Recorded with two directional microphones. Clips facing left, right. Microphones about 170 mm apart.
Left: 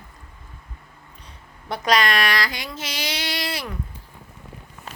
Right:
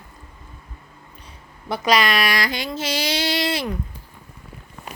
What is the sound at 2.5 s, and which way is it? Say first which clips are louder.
Speech: right 7 dB; 25° right (ahead or behind).